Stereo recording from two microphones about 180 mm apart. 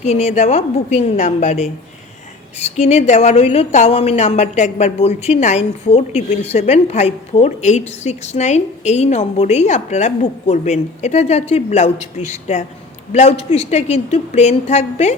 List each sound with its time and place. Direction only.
0.0 s a woman's voice: 40° left (ahead or behind)